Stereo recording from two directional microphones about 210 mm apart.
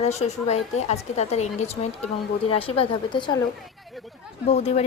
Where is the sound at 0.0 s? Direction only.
30° left (ahead or behind).